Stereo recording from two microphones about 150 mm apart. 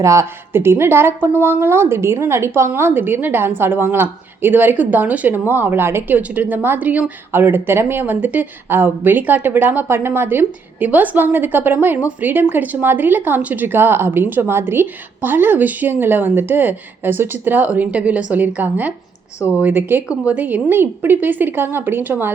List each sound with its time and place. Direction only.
0.0 s a woman's voice: 20° right (ahead or behind)